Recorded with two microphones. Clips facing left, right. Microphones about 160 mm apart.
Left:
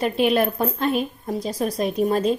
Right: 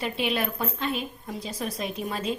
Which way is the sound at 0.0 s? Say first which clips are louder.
Left 8 dB; 45° left (ahead or behind).